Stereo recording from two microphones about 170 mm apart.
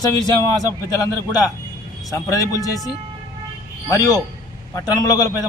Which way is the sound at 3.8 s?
20° left (ahead or behind).